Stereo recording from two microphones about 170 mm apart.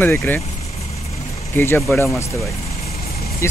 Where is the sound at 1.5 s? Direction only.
15° left (ahead or behind).